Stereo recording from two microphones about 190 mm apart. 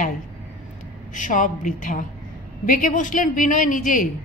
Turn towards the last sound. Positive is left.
turn(degrees=45)  # may be behind; listen again after turning